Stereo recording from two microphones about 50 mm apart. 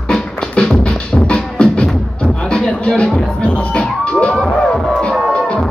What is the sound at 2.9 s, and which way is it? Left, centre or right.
Speech, centre.